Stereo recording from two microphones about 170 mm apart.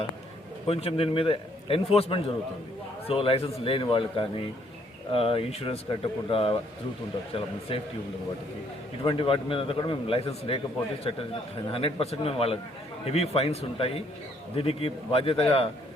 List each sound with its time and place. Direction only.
0.7 s a man's voice: 35° left (ahead or behind)
7.7 s a man's voice: 30° left (ahead or behind)
9.0 s a man's voice: 30° left (ahead or behind)